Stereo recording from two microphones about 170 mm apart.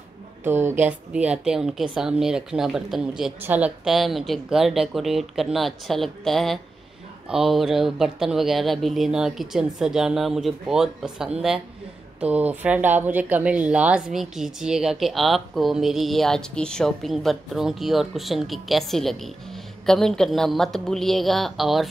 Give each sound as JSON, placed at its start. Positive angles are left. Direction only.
{"t": 0.4, "sound": "speech", "side_deg": -15}